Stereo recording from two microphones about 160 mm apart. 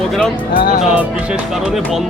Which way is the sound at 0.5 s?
60° left (ahead or behind).